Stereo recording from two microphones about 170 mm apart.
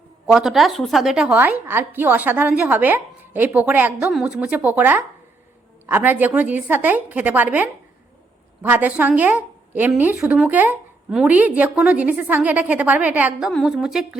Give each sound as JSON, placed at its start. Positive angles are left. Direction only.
{"t": 0.3, "sound": "a woman's voice", "side_deg": 0}